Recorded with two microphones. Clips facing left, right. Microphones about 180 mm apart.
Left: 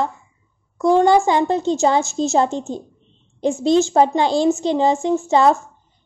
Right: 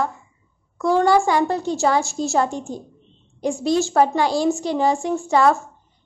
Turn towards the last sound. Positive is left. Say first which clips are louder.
# left 2 dB
turn(degrees=20)  # may be behind; listen again after turning